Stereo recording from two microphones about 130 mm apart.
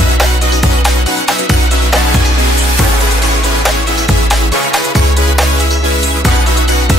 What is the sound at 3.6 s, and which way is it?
Music, centre (ahead or behind).